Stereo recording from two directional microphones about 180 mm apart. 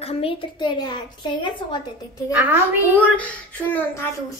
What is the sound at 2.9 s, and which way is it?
Speech, 10° left (ahead or behind).